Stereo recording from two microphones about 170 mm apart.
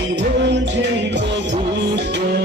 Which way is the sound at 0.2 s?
90° right.